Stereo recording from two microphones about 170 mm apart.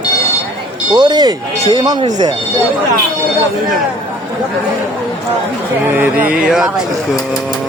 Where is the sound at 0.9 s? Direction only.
25° right (ahead or behind).